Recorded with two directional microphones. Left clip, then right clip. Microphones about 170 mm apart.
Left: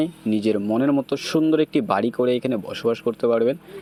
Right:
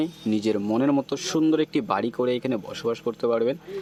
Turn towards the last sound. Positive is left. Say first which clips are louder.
# left 4 dB
turn(degrees=15)  # may be behind; listen again after turning